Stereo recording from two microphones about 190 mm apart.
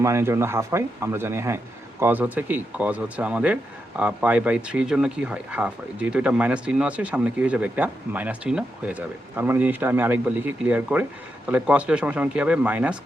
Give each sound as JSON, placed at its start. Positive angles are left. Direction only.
{"t": 0.0, "sound": "speech", "side_deg": -15}